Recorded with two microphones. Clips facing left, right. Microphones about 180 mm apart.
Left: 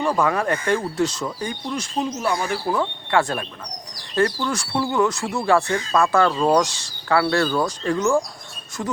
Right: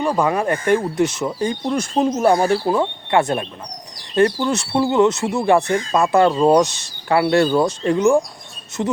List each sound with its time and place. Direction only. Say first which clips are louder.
0.0 s speech: right 2 dB; 20° right (ahead or behind)
1.6 s speech: right 6 dB; 50° right (ahead or behind)
2.6 s speech: right 4 dB; 20° right (ahead or behind)